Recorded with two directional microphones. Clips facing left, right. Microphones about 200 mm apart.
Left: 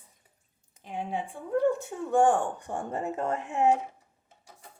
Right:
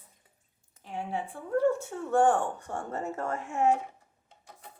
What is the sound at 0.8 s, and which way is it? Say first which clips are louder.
Speech: left 1 dB; 15° left (ahead or behind).